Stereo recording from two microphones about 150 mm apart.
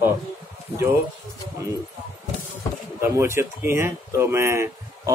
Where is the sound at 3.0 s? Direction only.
15° right (ahead or behind).